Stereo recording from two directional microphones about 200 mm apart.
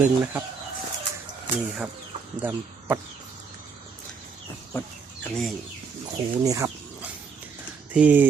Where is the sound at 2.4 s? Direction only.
10° right (ahead or behind).